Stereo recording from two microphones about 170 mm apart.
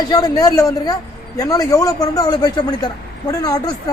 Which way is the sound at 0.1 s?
20° left (ahead or behind).